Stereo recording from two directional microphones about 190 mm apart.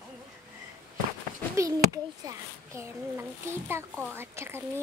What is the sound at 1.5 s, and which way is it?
A child's voice, 15° right (ahead or behind).